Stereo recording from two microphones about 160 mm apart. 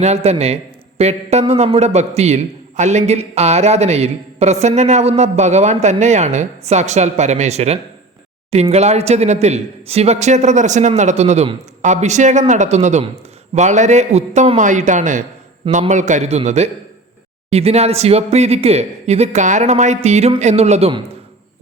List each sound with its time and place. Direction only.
0.0 s a man's voice: 45° right (ahead or behind)